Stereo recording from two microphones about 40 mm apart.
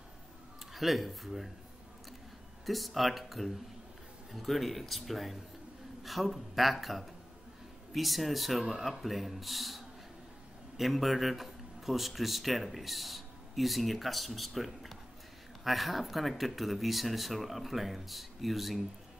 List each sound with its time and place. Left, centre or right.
0.7 s speech: centre
2.6 s speech: centre